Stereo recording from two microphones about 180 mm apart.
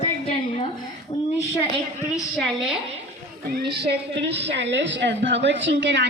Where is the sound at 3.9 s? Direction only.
75° right (ahead or behind).